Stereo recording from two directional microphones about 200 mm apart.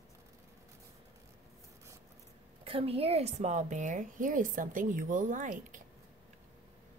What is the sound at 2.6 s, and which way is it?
A woman's voice, 30° right (ahead or behind).